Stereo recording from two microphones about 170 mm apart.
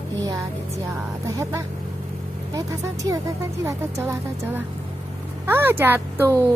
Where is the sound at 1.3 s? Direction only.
20° right (ahead or behind).